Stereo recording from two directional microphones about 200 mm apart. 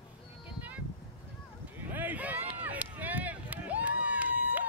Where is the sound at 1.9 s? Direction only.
10° right (ahead or behind).